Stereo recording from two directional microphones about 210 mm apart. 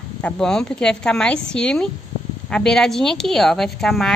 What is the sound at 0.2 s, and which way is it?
A woman's voice, 5° left (ahead or behind).